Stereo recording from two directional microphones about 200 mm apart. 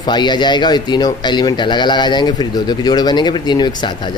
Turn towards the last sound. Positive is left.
turn(degrees=20)  # may be behind; listen again after turning